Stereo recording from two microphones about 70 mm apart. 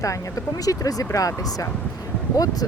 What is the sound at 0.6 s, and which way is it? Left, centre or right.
Speech, left.